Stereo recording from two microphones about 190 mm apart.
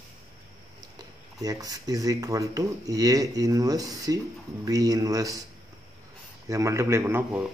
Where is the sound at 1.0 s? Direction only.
20° right (ahead or behind).